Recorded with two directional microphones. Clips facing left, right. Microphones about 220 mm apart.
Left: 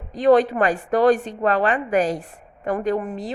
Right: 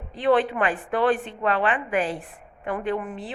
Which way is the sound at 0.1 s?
40° left (ahead or behind).